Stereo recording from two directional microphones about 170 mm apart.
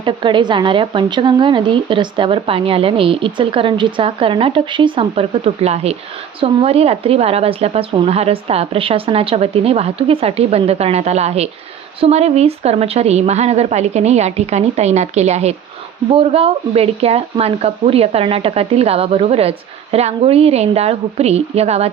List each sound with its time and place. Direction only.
0.0 s speech: 30° right (ahead or behind)